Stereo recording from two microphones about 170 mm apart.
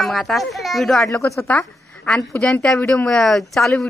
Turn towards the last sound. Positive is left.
turn(degrees=0)  # may be behind; listen again after turning